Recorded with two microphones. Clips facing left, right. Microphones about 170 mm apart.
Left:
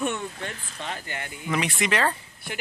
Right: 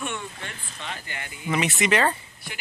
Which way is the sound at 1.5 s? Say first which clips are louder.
Right 3 dB; 5° right (ahead or behind).